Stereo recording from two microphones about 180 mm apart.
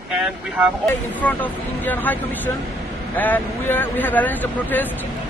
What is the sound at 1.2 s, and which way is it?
Speech, 10° left (ahead or behind).